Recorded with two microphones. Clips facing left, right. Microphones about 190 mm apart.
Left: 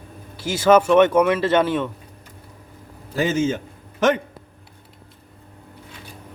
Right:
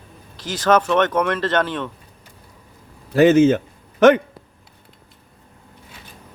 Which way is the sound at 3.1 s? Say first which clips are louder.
Right 8 dB; 65° right (ahead or behind).